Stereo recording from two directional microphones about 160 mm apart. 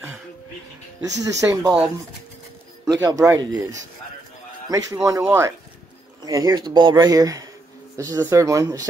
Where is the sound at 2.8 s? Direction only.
25° right (ahead or behind).